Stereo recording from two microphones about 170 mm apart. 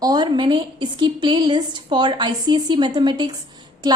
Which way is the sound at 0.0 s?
25° right (ahead or behind).